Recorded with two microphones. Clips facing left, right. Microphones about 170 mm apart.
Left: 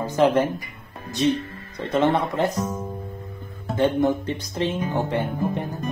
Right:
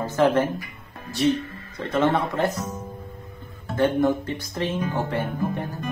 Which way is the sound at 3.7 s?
20° left (ahead or behind).